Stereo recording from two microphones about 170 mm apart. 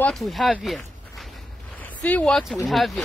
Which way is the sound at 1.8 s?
10° left (ahead or behind).